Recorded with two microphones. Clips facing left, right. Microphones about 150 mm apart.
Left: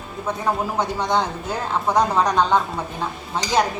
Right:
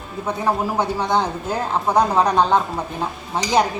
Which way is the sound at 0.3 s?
10° right (ahead or behind).